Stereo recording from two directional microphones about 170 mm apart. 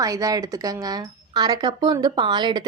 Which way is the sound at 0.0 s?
20° right (ahead or behind).